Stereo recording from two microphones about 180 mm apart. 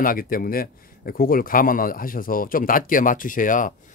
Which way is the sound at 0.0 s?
50° left (ahead or behind).